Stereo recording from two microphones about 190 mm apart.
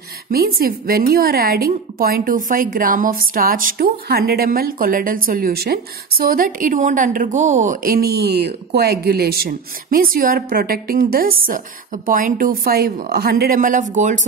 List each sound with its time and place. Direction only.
0.3 s a woman's voice: 50° right (ahead or behind)